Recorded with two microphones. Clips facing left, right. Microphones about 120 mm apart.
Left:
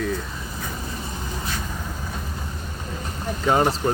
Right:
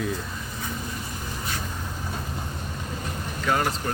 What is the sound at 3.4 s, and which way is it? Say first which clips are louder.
Speech: left 5 dB; 25° left (ahead or behind).